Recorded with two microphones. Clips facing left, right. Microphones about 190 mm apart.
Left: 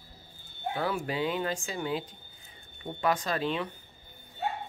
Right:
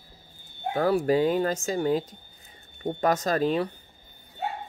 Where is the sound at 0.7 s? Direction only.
40° right (ahead or behind).